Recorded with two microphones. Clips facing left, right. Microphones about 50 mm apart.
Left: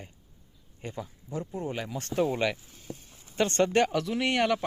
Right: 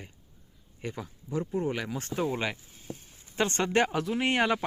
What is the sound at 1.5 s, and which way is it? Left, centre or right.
Speech, right.